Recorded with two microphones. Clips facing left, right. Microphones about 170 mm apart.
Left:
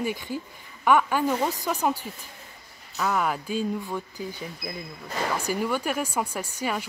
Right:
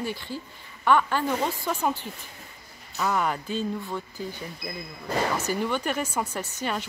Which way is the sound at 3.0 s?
Centre (ahead or behind).